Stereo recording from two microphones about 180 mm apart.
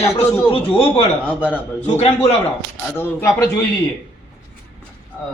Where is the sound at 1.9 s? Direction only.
35° left (ahead or behind).